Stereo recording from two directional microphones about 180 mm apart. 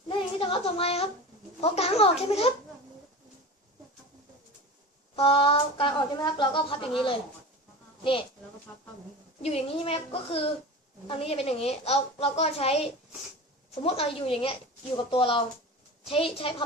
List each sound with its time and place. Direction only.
0.1 s child singing: 30° left (ahead or behind)
1.6 s a woman's voice: 35° left (ahead or behind)
5.1 s speech: 30° left (ahead or behind)
9.4 s a woman's voice: 35° left (ahead or behind)